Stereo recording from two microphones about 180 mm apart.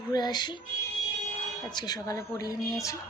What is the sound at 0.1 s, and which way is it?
Speech, 25° left (ahead or behind).